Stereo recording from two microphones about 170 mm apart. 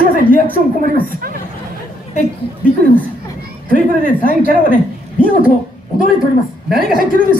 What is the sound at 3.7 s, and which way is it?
A woman's voice, 55° right (ahead or behind).